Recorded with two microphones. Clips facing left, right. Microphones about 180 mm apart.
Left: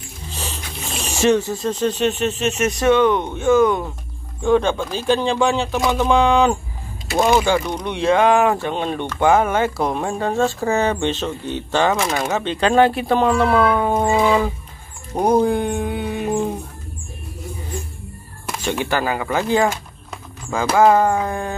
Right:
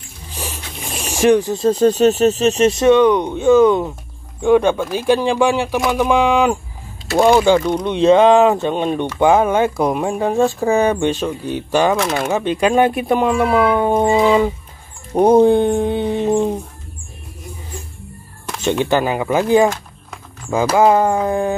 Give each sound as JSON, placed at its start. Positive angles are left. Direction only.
{"t": 0.3, "sound": "a sound", "side_deg": -10}
{"t": 1.6, "sound": "speech", "side_deg": -35}
{"t": 7.7, "sound": "speech", "side_deg": -20}
{"t": 18.9, "sound": "speech", "side_deg": -20}
{"t": 20.7, "sound": "speech", "side_deg": -15}